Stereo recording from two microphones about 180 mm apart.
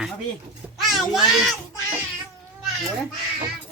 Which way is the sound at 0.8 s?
Centre (ahead or behind).